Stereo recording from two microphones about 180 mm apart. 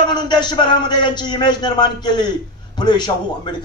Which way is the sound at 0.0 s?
25° left (ahead or behind).